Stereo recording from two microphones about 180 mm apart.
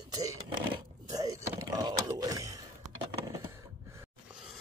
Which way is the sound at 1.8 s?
20° right (ahead or behind).